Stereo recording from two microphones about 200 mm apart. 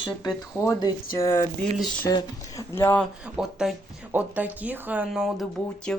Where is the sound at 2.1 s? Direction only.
20° left (ahead or behind).